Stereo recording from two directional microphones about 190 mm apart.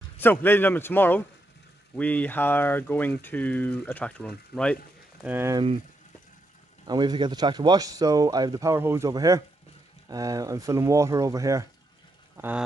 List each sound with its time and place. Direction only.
0.2 s speech: 10° left (ahead or behind)
5.2 s speech: 10° right (ahead or behind)
6.9 s speech: 20° right (ahead or behind)